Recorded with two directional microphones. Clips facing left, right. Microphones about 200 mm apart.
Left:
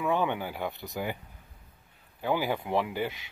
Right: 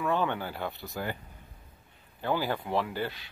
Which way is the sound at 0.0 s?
15° left (ahead or behind).